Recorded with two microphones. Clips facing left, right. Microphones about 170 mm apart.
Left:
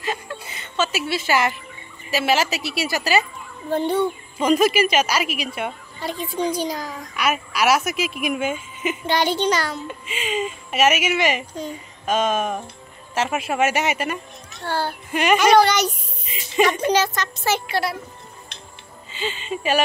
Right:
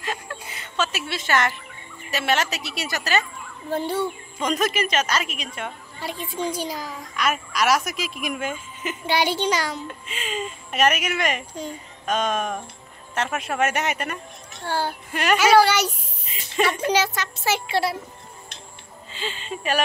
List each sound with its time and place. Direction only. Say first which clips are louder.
0.0 s a sound: left 3 dB; centre (ahead or behind)
0.6 s a woman's voice: left 3 dB; 5° left (ahead or behind)
3.7 s a woman's voice: left 4 dB; 5° right (ahead or behind)
4.4 s a woman's voice: left 6 dB; 10° left (ahead or behind)
5.9 s a woman's voice: left 4 dB; 5° right (ahead or behind)
9.0 s a child's voice: left 1 dB; 10° right (ahead or behind)
9.8 s a woman's voice: left 4 dB; 5° left (ahead or behind)
14.6 s a child's voice: left 1 dB; 15° right (ahead or behind)
16.3 s a woman's voice: left 4 dB; 5° left (ahead or behind)
16.9 s a child's voice: left 2 dB; 10° right (ahead or behind)
17.6 s a child's voice: right 1 dB; 25° right (ahead or behind)
19.1 s a woman's voice: left 4 dB; centre (ahead or behind)